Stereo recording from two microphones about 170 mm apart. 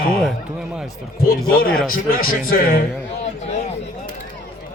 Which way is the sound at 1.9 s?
60° left (ahead or behind).